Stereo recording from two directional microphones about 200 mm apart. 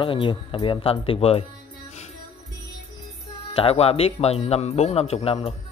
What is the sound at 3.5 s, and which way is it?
Speech, 30° left (ahead or behind).